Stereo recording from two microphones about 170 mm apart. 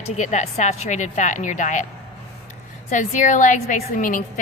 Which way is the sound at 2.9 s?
50° left (ahead or behind).